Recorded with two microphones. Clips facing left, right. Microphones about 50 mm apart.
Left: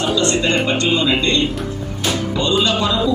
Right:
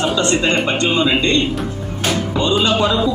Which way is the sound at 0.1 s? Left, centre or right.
Right.